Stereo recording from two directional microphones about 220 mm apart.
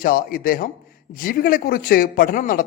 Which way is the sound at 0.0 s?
40° left (ahead or behind).